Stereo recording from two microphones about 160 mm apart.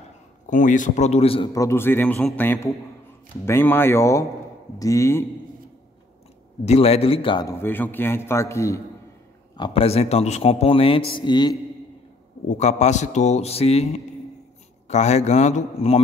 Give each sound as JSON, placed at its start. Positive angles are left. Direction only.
{"t": 0.5, "sound": "a man's voice", "side_deg": 55}
{"t": 1.5, "sound": "a man's voice", "side_deg": 20}
{"t": 6.6, "sound": "speech", "side_deg": 40}
{"t": 7.4, "sound": "a man's voice", "side_deg": 15}
{"t": 9.6, "sound": "speech", "side_deg": 35}
{"t": 12.4, "sound": "a man's voice", "side_deg": 45}